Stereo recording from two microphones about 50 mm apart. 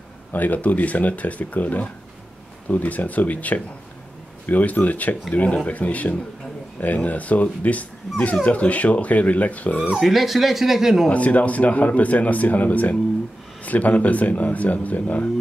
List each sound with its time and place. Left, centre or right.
0.3 s speech: left
10.0 s speech: centre
11.1 s speech: left